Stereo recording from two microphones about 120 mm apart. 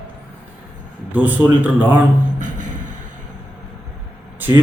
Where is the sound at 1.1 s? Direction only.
15° right (ahead or behind).